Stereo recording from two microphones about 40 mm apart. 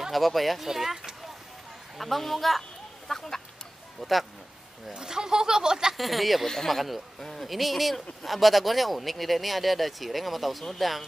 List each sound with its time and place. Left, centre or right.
0.1 s a man's voice: centre
2.0 s a man's voice: centre
3.1 s chicken: centre
4.0 s a man's voice: centre
4.9 s speech: centre
5.9 s a man's voice: centre